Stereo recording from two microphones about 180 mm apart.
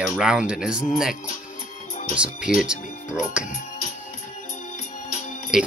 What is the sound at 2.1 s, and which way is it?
Speech, 5° right (ahead or behind).